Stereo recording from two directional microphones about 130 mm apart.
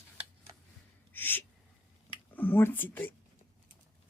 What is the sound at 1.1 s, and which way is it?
Gasp, 15° left (ahead or behind).